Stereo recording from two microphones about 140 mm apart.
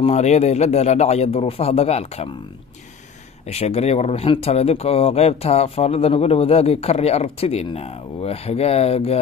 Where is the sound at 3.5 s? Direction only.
50° left (ahead or behind).